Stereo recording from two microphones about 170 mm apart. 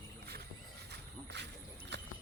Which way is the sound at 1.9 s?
90° right.